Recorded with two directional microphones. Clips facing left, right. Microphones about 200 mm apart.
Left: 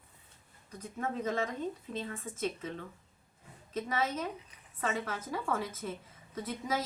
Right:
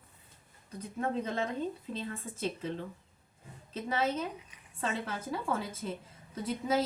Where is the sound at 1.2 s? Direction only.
30° right (ahead or behind).